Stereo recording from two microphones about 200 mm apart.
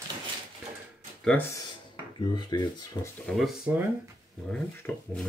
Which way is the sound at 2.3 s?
20° left (ahead or behind).